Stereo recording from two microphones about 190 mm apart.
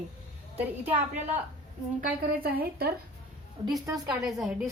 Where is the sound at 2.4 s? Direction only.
55° right (ahead or behind).